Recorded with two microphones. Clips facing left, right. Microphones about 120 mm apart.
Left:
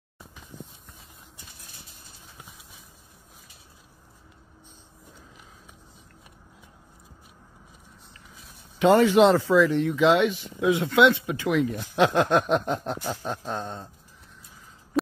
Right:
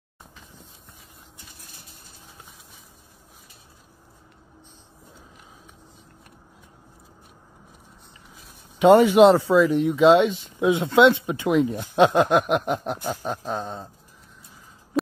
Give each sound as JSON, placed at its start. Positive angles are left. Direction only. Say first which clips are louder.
{"t": 8.7, "sound": "speech", "louder": "right 4 dB", "side_deg": -20}
{"t": 12.3, "sound": "a sound", "louder": "right 2 dB", "side_deg": -5}
{"t": 13.0, "sound": "speech", "louder": "right 3 dB", "side_deg": -10}